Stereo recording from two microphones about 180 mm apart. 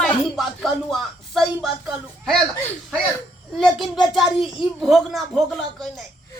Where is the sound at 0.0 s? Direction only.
Centre (ahead or behind).